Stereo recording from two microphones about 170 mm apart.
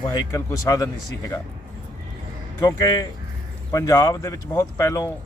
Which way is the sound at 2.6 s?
20° left (ahead or behind).